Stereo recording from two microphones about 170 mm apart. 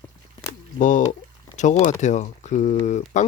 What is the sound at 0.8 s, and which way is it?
Speech, 45° left (ahead or behind).